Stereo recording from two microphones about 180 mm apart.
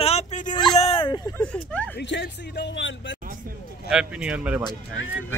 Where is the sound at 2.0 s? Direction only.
75° left (ahead or behind).